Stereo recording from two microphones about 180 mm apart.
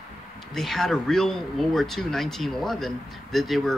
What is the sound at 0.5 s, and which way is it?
Speech, centre (ahead or behind).